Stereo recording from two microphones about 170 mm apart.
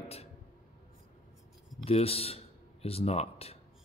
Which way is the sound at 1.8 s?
35° left (ahead or behind).